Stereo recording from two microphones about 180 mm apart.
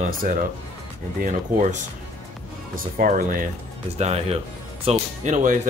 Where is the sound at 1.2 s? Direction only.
45° right (ahead or behind).